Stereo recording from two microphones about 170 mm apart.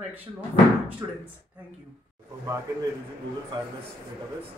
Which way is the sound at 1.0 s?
20° right (ahead or behind).